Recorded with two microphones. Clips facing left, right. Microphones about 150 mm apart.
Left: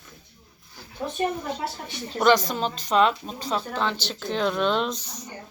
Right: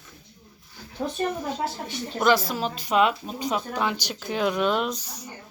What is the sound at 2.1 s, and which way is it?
A woman's voice, 5° right (ahead or behind).